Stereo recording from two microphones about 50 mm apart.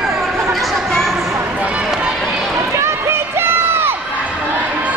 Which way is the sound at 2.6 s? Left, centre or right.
Right.